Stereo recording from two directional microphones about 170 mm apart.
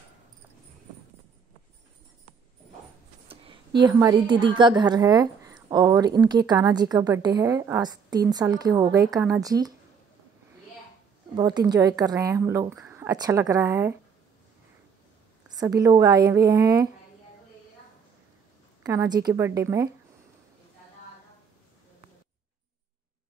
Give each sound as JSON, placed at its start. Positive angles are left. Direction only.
{"t": 3.3, "sound": "a woman's voice", "side_deg": -30}
{"t": 11.3, "sound": "a woman's voice", "side_deg": -25}
{"t": 15.5, "sound": "a woman's voice", "side_deg": -20}
{"t": 18.8, "sound": "a woman's voice", "side_deg": -20}